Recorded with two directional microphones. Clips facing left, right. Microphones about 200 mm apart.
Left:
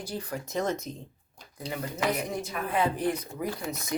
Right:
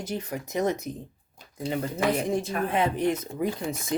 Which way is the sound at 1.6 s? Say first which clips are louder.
Right 4 dB; 25° right (ahead or behind).